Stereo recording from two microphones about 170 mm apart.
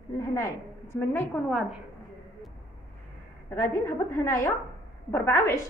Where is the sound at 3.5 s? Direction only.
15° left (ahead or behind).